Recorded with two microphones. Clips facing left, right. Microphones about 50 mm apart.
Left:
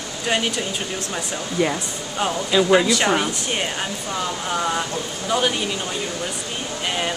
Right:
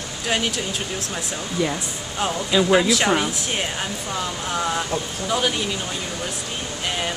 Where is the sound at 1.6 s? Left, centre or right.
Left.